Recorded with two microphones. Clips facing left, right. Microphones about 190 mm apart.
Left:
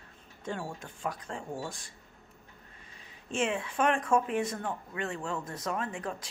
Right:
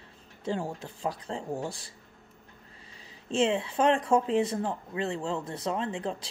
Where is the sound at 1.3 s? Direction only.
20° right (ahead or behind).